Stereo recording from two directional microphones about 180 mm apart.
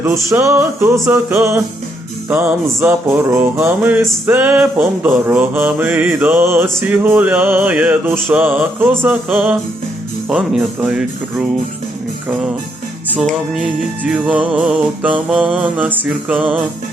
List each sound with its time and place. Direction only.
0.0 s music: 15° right (ahead or behind)
10.2 s speech: 5° right (ahead or behind)
13.5 s music: 5° right (ahead or behind)